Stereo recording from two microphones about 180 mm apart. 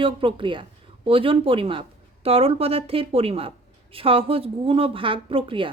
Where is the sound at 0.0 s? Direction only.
30° right (ahead or behind).